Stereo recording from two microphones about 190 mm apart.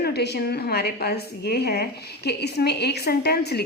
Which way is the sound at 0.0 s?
60° left (ahead or behind).